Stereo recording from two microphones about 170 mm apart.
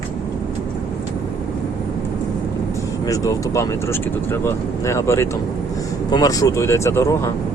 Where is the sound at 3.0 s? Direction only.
20° left (ahead or behind).